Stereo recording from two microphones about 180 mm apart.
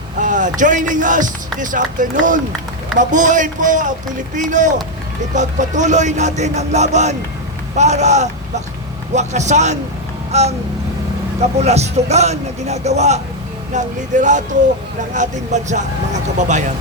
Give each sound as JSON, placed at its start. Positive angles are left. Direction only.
{"t": 0.2, "sound": "speech", "side_deg": -45}
{"t": 11.6, "sound": "speech", "side_deg": -35}